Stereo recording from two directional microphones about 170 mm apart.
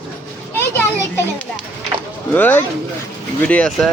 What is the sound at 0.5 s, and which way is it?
Speech, 10° left (ahead or behind).